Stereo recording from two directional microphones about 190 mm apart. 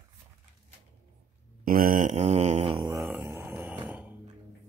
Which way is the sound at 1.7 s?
45° right (ahead or behind).